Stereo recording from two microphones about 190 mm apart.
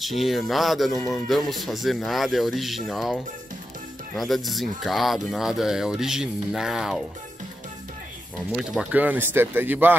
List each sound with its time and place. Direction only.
0.0 s speech: centre (ahead or behind)
0.9 s speech: 15° left (ahead or behind)
1.3 s speech: centre (ahead or behind)
4.2 s speech: centre (ahead or behind)
8.5 s speech: centre (ahead or behind)